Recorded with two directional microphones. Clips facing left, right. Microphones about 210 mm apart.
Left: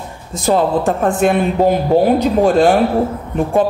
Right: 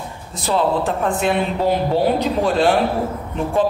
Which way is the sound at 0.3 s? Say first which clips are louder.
Left 5 dB; 45° left (ahead or behind).